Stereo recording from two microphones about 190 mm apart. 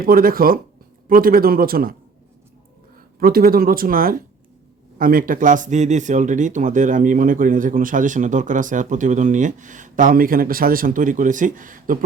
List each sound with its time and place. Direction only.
0.0 s speech: 50° right (ahead or behind)
3.2 s speech: 50° right (ahead or behind)